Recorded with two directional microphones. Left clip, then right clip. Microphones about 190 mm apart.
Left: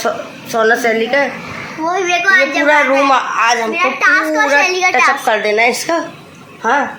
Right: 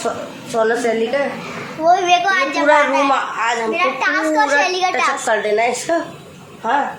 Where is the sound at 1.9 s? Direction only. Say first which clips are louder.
Left 1 dB; 10° right (ahead or behind).